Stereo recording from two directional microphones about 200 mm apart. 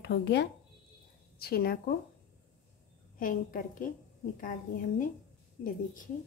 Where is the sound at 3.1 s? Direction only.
45° left (ahead or behind).